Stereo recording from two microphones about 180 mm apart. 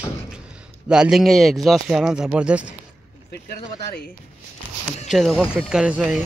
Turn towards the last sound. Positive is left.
turn(degrees=-5)  # may be behind; listen again after turning